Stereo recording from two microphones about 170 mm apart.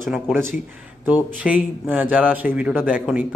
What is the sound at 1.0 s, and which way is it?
Speech, 10° right (ahead or behind).